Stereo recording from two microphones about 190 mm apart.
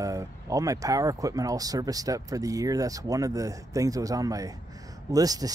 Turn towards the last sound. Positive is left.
turn(degrees=-20)  # may be behind; listen again after turning